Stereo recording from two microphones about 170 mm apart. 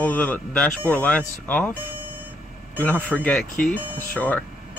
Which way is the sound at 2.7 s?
10° left (ahead or behind).